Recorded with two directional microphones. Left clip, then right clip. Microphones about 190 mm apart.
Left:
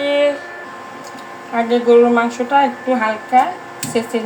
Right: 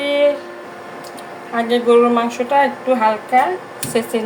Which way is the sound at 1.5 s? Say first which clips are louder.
Left 2 dB; 15° right (ahead or behind).